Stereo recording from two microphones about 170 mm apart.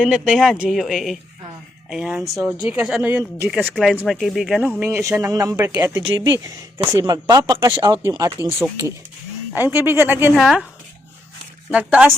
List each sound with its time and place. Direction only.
0.0 s speech: centre (ahead or behind)
3.5 s speech: centre (ahead or behind)
10.3 s speech: centre (ahead or behind)
11.7 s speech: 5° right (ahead or behind)